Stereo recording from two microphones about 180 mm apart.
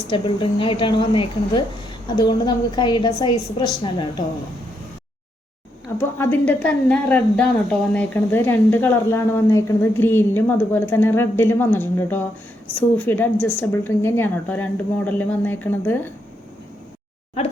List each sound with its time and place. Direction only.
0.1 s a woman's voice: 25° left (ahead or behind)
6.0 s a woman's voice: 10° left (ahead or behind)